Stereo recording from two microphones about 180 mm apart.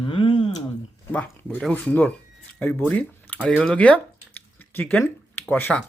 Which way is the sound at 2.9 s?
10° left (ahead or behind).